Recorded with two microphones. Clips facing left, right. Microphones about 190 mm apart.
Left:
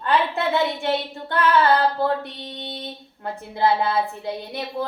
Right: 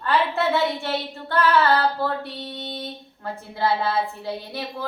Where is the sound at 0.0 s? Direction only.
15° left (ahead or behind).